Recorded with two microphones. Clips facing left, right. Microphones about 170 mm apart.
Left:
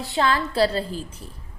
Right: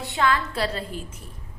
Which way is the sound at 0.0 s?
35° left (ahead or behind).